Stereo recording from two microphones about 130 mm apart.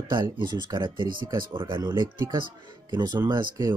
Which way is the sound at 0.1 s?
35° right (ahead or behind).